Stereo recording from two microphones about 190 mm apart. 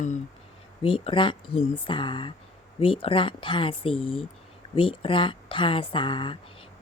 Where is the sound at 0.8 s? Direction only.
30° left (ahead or behind).